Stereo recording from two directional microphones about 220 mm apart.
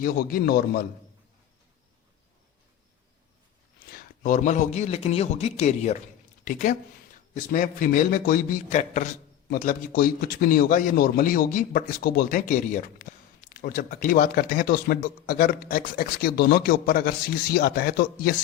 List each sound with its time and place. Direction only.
0.0 s a man's voice: 40° left (ahead or behind)
3.9 s a man's voice: 35° left (ahead or behind)